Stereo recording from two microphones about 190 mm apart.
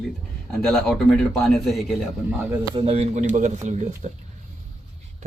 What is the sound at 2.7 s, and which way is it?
Speech, 30° right (ahead or behind).